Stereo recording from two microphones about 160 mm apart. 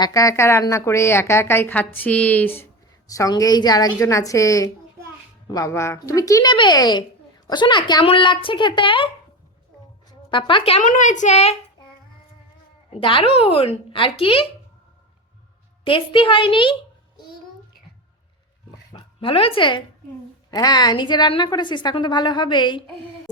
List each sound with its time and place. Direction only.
0.0 s a woman's voice: 20° left (ahead or behind)
3.1 s a woman's voice: 20° left (ahead or behind)
10.1 s speech: 30° left (ahead or behind)
10.8 s a woman's voice: 50° left (ahead or behind)
13.0 s speech: 35° left (ahead or behind)
15.9 s speech: 35° left (ahead or behind)
18.9 s a woman's voice: 30° left (ahead or behind)